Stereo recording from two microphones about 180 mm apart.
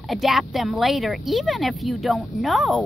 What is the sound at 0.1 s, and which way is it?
Speech, centre (ahead or behind).